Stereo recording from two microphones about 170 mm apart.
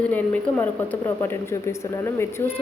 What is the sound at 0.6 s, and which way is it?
A woman's voice, 15° left (ahead or behind).